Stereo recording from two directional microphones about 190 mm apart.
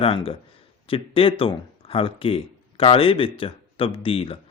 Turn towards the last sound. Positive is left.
turn(degrees=30)  # may be behind; listen again after turning